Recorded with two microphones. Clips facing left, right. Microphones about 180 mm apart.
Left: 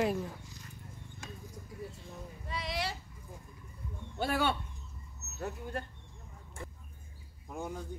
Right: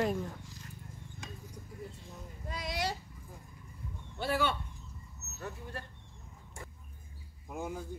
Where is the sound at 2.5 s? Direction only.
45° right (ahead or behind).